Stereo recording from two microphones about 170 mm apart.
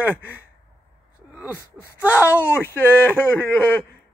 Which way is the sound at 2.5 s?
15° left (ahead or behind).